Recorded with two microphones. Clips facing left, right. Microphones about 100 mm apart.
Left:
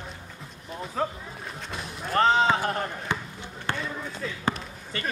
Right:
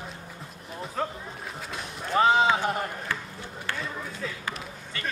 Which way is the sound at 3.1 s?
20° left (ahead or behind).